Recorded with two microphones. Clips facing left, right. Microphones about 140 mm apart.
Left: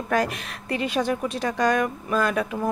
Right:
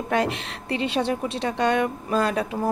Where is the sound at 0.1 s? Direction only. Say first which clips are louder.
Even; 25° right (ahead or behind).